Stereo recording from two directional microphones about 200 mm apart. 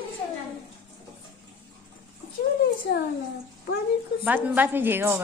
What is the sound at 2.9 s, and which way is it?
Speech, 60° left (ahead or behind).